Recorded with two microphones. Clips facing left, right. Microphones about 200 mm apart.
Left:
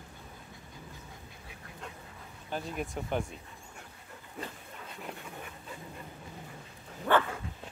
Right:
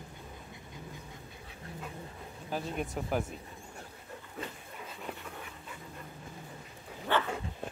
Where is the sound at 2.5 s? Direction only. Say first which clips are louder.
Right 1 dB; 5° right (ahead or behind).